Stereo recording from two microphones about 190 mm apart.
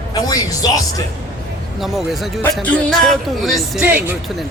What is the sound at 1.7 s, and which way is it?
A man's voice, centre (ahead or behind).